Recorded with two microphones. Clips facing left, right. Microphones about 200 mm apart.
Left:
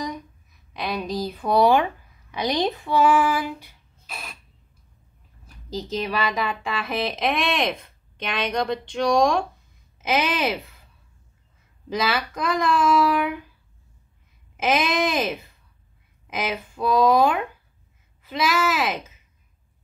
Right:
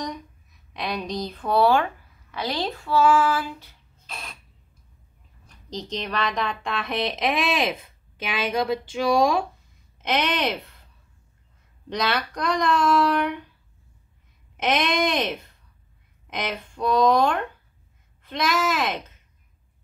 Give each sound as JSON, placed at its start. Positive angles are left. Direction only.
{"t": 0.0, "sound": "a sound", "side_deg": 0}
{"t": 5.5, "sound": "speech", "side_deg": 5}
{"t": 11.9, "sound": "speech", "side_deg": 5}
{"t": 14.6, "sound": "speech", "side_deg": 0}